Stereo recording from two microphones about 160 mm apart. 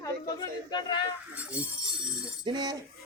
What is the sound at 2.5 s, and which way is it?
Speech, 25° right (ahead or behind).